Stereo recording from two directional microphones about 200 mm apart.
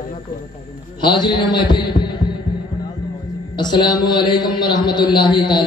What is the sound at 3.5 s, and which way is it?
A man's voice, 20° left (ahead or behind).